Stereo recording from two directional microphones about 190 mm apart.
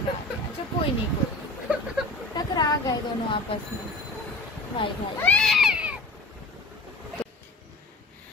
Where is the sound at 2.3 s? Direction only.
20° left (ahead or behind).